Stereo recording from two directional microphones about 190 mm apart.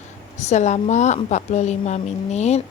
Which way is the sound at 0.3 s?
40° left (ahead or behind).